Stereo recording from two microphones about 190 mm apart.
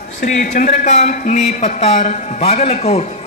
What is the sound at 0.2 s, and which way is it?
A man's voice, 40° left (ahead or behind).